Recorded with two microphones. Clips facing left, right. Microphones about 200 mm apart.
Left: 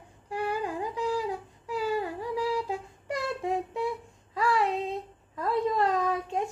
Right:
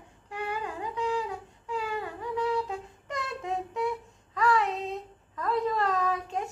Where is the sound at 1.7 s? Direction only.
35° left (ahead or behind).